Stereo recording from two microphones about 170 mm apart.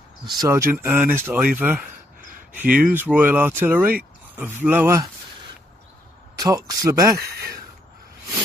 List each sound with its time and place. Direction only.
0.3 s speech: 20° right (ahead or behind)
6.3 s speech: 20° right (ahead or behind)